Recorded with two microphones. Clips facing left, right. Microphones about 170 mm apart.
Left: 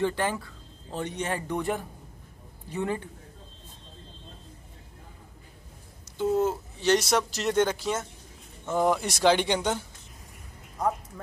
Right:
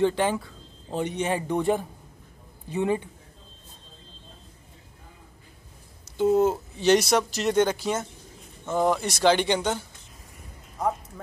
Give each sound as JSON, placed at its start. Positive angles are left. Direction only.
{"t": 0.0, "sound": "a man's voice", "side_deg": -20}
{"t": 6.1, "sound": "speech", "side_deg": -20}
{"t": 7.1, "sound": "speech", "side_deg": 0}